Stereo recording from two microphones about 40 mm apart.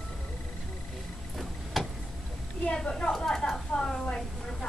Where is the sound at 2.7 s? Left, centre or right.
Left.